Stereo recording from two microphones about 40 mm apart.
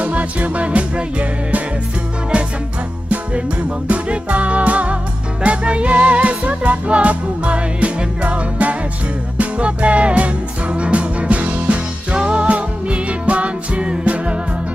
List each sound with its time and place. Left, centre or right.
0.0 s music: right
3.8 s music: right